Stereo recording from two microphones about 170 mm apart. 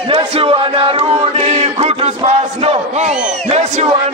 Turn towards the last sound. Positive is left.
turn(degrees=-40)  # may be behind; listen again after turning